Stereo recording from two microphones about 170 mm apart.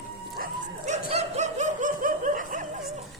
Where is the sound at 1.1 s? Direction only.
40° right (ahead or behind).